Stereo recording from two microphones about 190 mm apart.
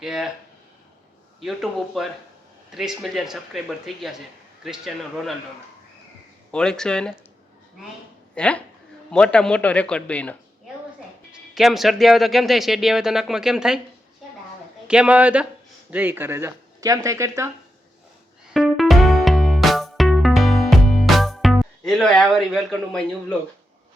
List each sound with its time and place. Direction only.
0.0 s speech: 5° right (ahead or behind)
1.4 s speech: centre (ahead or behind)
6.5 s speech: 5° left (ahead or behind)
8.4 s a woman's voice: 5° left (ahead or behind)
14.8 s speech: 5° right (ahead or behind)
18.5 s music: centre (ahead or behind)